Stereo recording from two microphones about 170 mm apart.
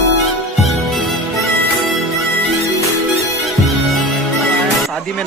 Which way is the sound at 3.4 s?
Centre (ahead or behind).